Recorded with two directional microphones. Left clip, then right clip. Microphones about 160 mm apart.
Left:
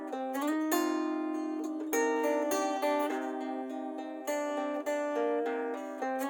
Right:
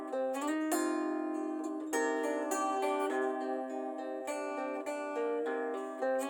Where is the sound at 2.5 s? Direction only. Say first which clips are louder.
Left 2 dB; 40° left (ahead or behind).